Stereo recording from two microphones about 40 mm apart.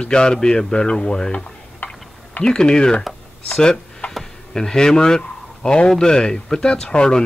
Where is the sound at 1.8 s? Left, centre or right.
Left.